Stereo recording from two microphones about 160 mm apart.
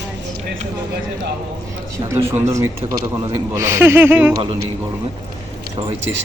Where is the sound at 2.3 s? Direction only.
15° right (ahead or behind).